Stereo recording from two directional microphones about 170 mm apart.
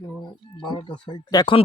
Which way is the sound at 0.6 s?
30° left (ahead or behind).